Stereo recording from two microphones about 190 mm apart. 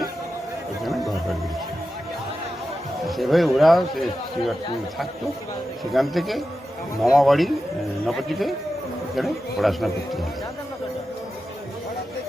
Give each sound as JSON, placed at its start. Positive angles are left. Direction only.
{"t": 0.9, "sound": "music", "side_deg": 0}
{"t": 3.1, "sound": "speech", "side_deg": 0}
{"t": 5.9, "sound": "speech", "side_deg": 0}